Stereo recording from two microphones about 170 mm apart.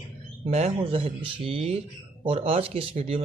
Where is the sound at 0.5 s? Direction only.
40° right (ahead or behind).